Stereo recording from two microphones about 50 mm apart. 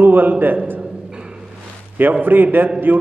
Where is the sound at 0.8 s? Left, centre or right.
Centre.